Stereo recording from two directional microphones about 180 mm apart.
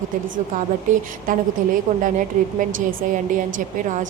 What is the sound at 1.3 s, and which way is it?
A woman's voice, 45° right (ahead or behind).